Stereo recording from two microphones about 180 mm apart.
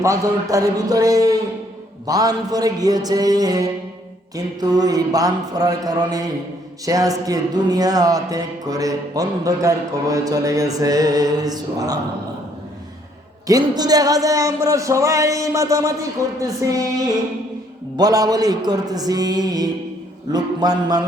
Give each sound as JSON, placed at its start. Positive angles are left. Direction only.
{"t": 0.0, "sound": "speech", "side_deg": -15}
{"t": 13.5, "sound": "speech", "side_deg": -20}
{"t": 17.9, "sound": "speech", "side_deg": -20}